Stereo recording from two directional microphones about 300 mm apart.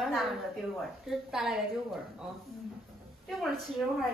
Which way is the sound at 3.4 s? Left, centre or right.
Centre.